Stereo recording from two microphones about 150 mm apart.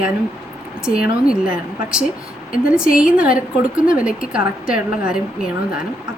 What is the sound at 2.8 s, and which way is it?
A woman's voice, 5° right (ahead or behind).